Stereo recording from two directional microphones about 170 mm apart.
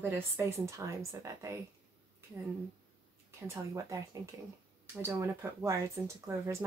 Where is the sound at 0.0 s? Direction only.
15° right (ahead or behind).